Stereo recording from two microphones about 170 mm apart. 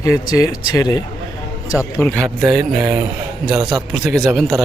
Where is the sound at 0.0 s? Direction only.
20° left (ahead or behind).